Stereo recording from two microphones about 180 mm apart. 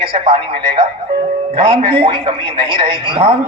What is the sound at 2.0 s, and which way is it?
Speech, 25° right (ahead or behind).